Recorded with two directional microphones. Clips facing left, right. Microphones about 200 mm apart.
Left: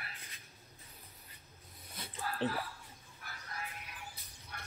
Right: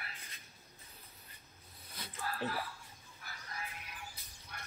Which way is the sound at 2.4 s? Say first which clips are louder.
Left 5 dB; 30° left (ahead or behind).